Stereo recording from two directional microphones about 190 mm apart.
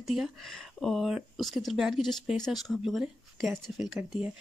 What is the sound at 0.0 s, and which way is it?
Speech, centre (ahead or behind).